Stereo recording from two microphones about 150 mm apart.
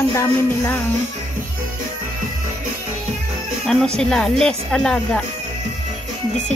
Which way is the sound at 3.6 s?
5° left (ahead or behind).